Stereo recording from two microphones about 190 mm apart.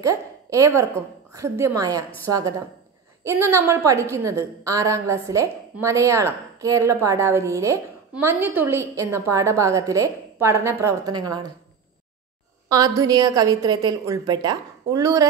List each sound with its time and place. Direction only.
0.0 s a woman's voice: 15° right (ahead or behind)
3.3 s a woman's voice: 15° right (ahead or behind)
12.6 s a woman's voice: 15° right (ahead or behind)